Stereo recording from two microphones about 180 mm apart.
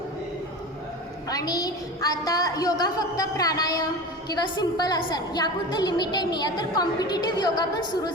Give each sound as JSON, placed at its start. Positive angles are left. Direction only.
{"t": 1.3, "sound": "a woman's voice", "side_deg": 20}